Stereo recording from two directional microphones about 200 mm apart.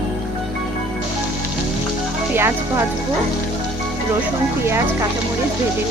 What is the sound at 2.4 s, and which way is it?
Speech, 10° right (ahead or behind).